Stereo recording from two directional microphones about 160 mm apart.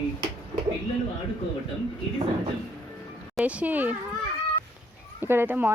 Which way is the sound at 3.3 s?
10° right (ahead or behind).